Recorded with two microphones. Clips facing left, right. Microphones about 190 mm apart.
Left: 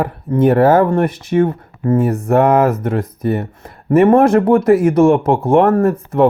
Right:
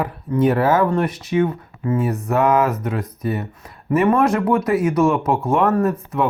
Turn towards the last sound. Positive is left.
turn(degrees=50)  # may be behind; listen again after turning